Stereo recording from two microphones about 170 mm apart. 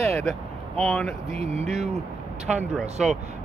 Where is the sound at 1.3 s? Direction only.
40° right (ahead or behind).